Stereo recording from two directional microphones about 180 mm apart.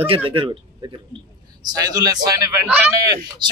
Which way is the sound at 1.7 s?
20° right (ahead or behind).